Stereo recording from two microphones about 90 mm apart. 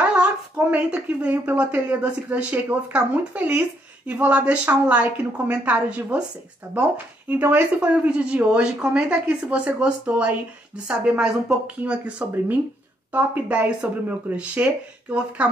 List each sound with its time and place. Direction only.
0.6 s speech: 15° right (ahead or behind)
6.7 s speech: 35° right (ahead or behind)
7.2 s speech: 20° right (ahead or behind)